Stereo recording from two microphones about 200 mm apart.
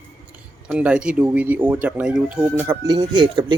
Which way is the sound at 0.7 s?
5° right (ahead or behind).